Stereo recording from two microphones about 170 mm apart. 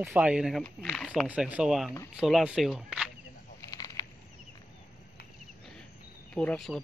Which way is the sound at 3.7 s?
20° left (ahead or behind).